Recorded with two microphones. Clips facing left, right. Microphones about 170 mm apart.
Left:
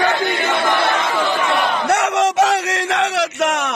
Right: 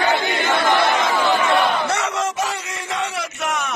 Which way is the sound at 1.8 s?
65° left (ahead or behind).